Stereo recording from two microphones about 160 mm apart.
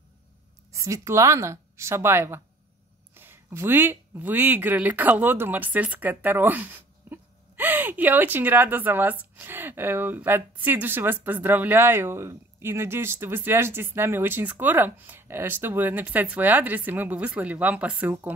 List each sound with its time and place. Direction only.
0.7 s a woman's voice: 20° right (ahead or behind)